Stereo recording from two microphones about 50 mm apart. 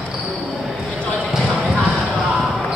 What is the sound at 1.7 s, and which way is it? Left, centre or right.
Music, centre.